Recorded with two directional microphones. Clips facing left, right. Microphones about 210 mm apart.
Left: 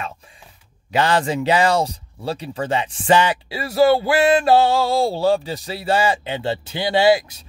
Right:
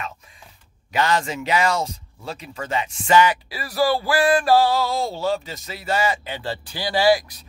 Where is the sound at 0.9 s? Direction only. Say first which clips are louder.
Left 3 dB; 30° left (ahead or behind).